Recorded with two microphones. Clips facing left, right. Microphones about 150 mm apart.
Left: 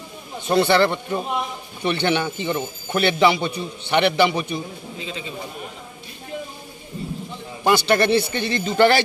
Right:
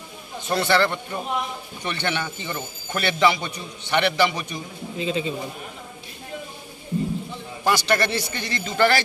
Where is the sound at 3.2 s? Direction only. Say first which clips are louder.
Right 1 dB; 25° left (ahead or behind).